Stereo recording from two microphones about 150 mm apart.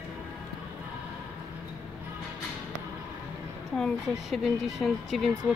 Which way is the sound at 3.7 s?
Centre (ahead or behind).